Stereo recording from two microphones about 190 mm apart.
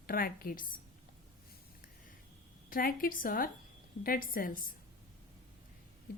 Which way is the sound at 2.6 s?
50° left (ahead or behind).